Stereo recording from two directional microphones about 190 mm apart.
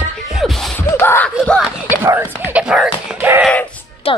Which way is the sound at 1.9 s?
10° right (ahead or behind).